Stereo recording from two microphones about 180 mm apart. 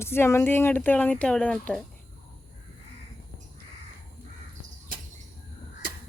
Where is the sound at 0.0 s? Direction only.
15° left (ahead or behind).